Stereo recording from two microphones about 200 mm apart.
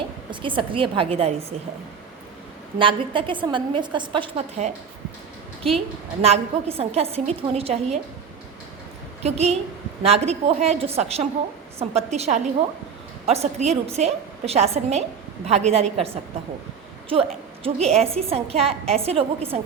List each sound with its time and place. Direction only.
0.3 s a woman's voice: 25° right (ahead or behind)
2.7 s a woman's voice: 25° right (ahead or behind)
9.2 s a woman's voice: 30° right (ahead or behind)